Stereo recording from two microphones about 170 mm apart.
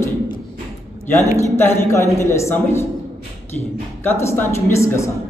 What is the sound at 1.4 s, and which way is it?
Speech, 15° left (ahead or behind).